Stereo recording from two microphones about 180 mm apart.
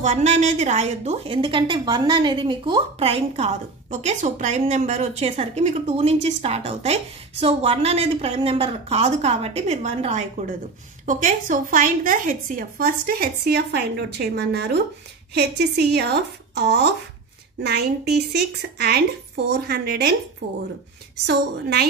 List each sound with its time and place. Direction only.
0.0 s a woman's voice: 40° right (ahead or behind); by 16.9 s 70° right (ahead or behind)
18.3 s a woman's voice: 60° right (ahead or behind)